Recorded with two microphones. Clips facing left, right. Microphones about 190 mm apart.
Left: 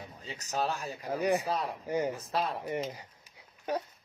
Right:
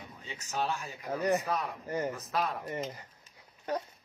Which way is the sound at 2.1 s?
30° left (ahead or behind).